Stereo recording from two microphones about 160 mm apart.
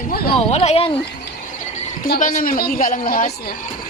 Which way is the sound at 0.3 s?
40° left (ahead or behind).